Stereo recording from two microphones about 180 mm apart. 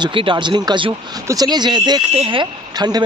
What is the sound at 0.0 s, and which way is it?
A man's voice, 25° right (ahead or behind).